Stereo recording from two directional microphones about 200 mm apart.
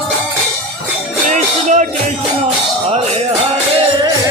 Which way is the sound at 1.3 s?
35° right (ahead or behind).